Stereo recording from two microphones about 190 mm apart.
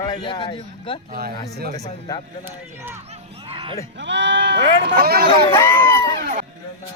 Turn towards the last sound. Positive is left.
turn(degrees=-45)  # may be behind; listen again after turning